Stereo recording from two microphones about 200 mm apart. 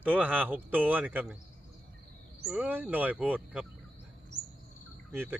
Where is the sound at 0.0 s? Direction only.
10° right (ahead or behind).